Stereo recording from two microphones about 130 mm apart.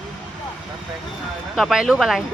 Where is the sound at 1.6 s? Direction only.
Centre (ahead or behind).